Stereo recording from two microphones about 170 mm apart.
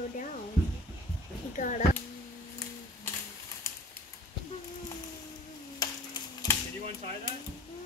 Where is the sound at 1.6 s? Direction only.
50° left (ahead or behind).